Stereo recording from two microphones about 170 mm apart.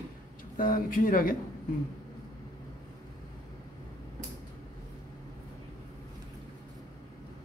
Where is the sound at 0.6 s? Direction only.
55° left (ahead or behind).